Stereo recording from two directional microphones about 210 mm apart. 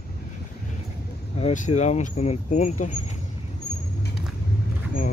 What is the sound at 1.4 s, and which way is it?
Speech, 35° left (ahead or behind).